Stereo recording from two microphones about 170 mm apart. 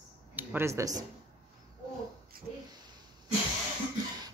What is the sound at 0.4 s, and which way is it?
Speech, 10° right (ahead or behind).